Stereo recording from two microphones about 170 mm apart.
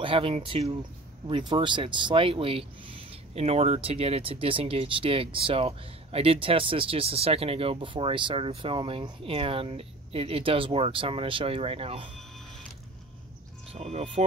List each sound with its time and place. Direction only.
0.0 s speech: 30° right (ahead or behind)
13.7 s speech: 40° right (ahead or behind)